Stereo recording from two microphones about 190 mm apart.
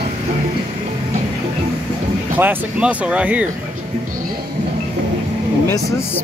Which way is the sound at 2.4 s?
10° right (ahead or behind).